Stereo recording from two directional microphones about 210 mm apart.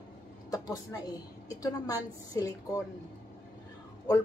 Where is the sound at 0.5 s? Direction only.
15° left (ahead or behind).